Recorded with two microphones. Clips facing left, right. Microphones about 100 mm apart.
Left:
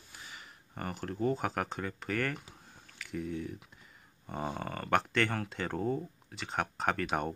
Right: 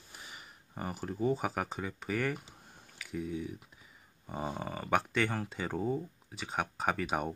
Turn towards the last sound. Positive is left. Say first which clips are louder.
# left 1 dB
turn(degrees=-5)  # may be behind; listen again after turning